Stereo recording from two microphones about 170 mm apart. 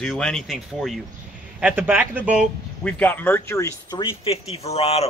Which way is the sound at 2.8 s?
10° left (ahead or behind).